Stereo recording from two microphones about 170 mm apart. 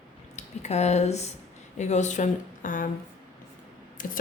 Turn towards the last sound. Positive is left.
turn(degrees=55)  # may be behind; listen again after turning